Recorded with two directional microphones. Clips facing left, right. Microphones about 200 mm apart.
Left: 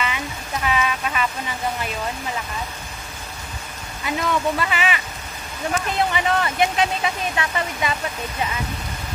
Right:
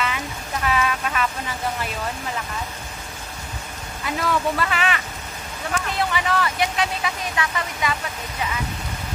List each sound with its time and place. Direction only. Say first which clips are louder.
0.7 s speech: even; centre (ahead or behind)
4.0 s speech: left 1 dB; centre (ahead or behind)
5.7 s speech: left 2 dB; 20° left (ahead or behind)